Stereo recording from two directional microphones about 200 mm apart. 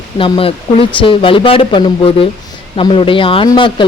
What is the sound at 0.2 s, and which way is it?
Speech, 30° left (ahead or behind).